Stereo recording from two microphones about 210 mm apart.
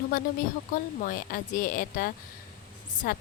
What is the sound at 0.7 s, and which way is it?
A woman's voice, 40° left (ahead or behind).